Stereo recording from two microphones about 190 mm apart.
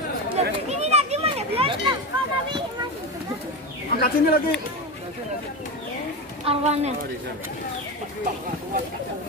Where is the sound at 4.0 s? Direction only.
55° left (ahead or behind).